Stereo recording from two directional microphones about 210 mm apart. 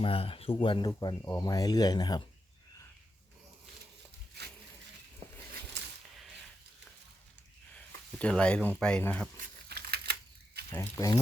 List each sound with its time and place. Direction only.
0.0 s speech: 25° left (ahead or behind)
7.7 s speech: 5° left (ahead or behind)
9.6 s typewriter: 50° right (ahead or behind)
10.7 s speech: 15° left (ahead or behind)